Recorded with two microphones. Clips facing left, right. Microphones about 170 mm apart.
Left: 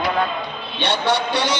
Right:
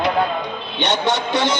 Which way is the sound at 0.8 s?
20° right (ahead or behind).